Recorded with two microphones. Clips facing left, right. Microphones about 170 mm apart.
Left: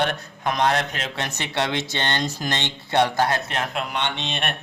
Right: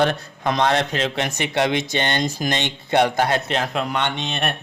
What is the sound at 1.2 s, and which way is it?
Speech, 15° right (ahead or behind).